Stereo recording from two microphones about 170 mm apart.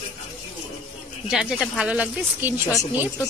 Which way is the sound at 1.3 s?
5° right (ahead or behind).